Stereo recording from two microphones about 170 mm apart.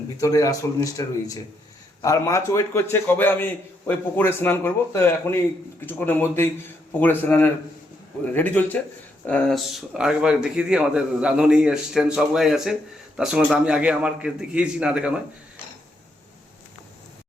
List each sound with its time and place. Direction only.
0.2 s a man's voice: 20° left (ahead or behind); by 15.2 s 5° right (ahead or behind)